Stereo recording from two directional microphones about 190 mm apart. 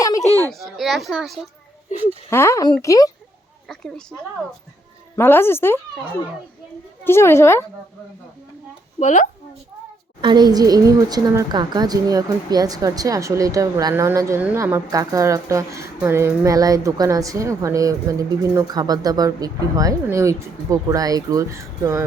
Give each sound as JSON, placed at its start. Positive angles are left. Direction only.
{"t": 0.0, "sound": "children playing", "side_deg": 20}
{"t": 0.3, "sound": "a woman's voice", "side_deg": 10}
{"t": 0.6, "sound": "a child's voice", "side_deg": 0}
{"t": 2.3, "sound": "a woman's voice", "side_deg": 15}
{"t": 3.7, "sound": "a child's voice", "side_deg": 5}
{"t": 5.1, "sound": "a woman's voice", "side_deg": 10}
{"t": 7.0, "sound": "a woman's voice", "side_deg": 15}
{"t": 9.0, "sound": "speech", "side_deg": 40}
{"t": 10.2, "sound": "a woman's voice", "side_deg": -25}